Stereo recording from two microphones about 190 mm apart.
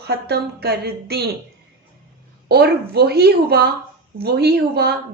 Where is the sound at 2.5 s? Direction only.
55° right (ahead or behind).